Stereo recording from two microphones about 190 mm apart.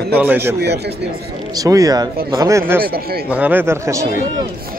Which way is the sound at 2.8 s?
50° right (ahead or behind).